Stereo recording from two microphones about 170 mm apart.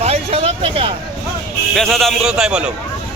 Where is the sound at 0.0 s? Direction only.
35° right (ahead or behind).